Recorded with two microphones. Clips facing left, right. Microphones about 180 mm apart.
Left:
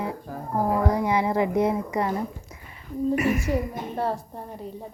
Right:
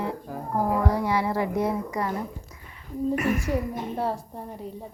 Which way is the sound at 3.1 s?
10° left (ahead or behind).